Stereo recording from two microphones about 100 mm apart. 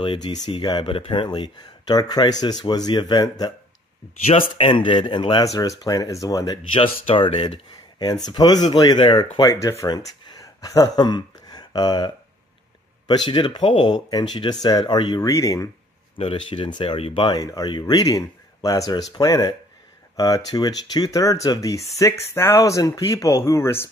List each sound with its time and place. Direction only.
0.0 s speech: 55° left (ahead or behind)
4.3 s speech: 70° left (ahead or behind)
5.4 s speech: 35° left (ahead or behind)
6.7 s speech: 65° left (ahead or behind); by 8.9 s 45° left (ahead or behind)
9.0 s speech: 55° left (ahead or behind)
9.4 s speech: 30° left (ahead or behind)
9.8 s speech: 45° left (ahead or behind)
16.3 s speech: 55° left (ahead or behind); by 23.9 s 25° left (ahead or behind)